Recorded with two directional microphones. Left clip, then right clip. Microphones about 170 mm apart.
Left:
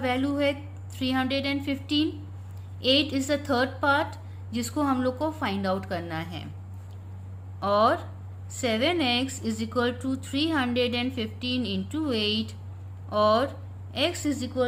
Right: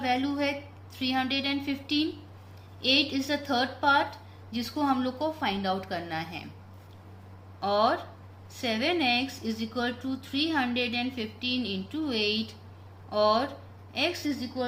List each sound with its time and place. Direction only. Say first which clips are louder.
0.0 s speech: left 2 dB; 35° left (ahead or behind)
7.6 s speech: left 3 dB; 35° left (ahead or behind)